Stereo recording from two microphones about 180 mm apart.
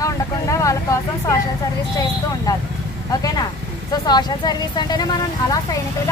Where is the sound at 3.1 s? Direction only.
20° left (ahead or behind).